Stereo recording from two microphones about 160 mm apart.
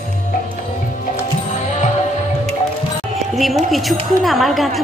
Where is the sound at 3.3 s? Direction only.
Centre (ahead or behind).